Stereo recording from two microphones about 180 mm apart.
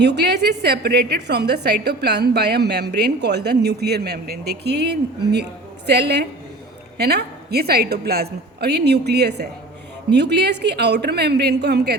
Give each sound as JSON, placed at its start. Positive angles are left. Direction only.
{"t": 0.0, "sound": "a woman's voice", "side_deg": -65}